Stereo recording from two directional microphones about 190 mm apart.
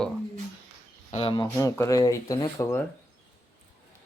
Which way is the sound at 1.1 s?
30° left (ahead or behind).